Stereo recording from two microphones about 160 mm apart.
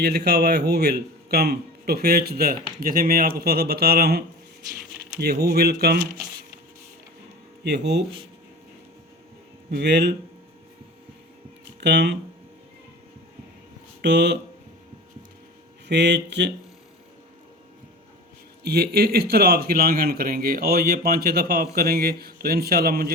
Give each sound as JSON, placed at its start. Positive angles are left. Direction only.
{"t": 0.0, "sound": "speech", "side_deg": -90}
{"t": 7.6, "sound": "speech", "side_deg": -90}
{"t": 9.7, "sound": "speech", "side_deg": -90}
{"t": 11.8, "sound": "speech", "side_deg": -90}
{"t": 14.0, "sound": "speech", "side_deg": -90}
{"t": 15.9, "sound": "speech", "side_deg": -90}
{"t": 18.6, "sound": "speech", "side_deg": -80}